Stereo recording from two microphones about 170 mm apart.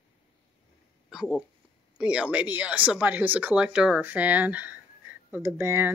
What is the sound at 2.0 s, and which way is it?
Speech, 5° right (ahead or behind).